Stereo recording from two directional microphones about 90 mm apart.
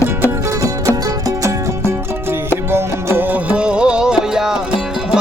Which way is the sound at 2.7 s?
25° right (ahead or behind).